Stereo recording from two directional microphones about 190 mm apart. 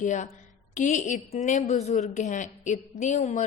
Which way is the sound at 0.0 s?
40° left (ahead or behind).